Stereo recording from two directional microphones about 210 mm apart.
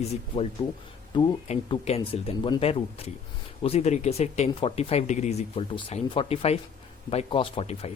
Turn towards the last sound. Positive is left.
turn(degrees=30)  # may be behind; listen again after turning